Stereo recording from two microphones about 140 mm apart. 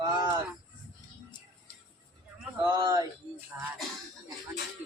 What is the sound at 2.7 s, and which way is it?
Speech, 30° right (ahead or behind).